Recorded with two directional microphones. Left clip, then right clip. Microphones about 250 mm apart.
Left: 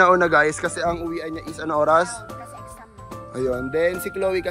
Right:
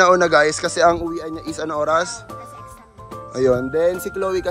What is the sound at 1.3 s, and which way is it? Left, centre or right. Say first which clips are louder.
Speech: right 3 dB; centre.